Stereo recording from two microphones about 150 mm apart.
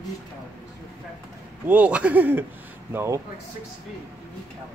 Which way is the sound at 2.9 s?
20° right (ahead or behind).